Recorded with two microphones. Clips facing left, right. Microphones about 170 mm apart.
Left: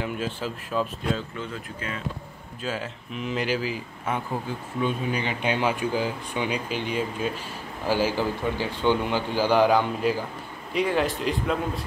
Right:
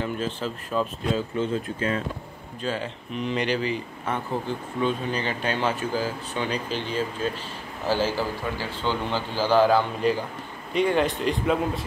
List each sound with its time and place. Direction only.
0.0 s speech: 5° left (ahead or behind)
1.4 s speech: 30° right (ahead or behind)
2.6 s speech: 5° left (ahead or behind)
10.7 s speech: centre (ahead or behind)